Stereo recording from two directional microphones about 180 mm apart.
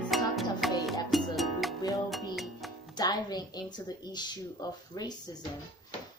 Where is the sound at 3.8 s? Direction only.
25° left (ahead or behind).